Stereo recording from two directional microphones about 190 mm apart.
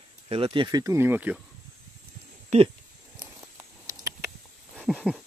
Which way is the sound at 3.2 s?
15° right (ahead or behind).